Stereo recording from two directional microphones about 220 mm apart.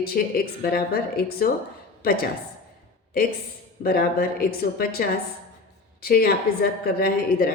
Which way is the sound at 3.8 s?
45° left (ahead or behind).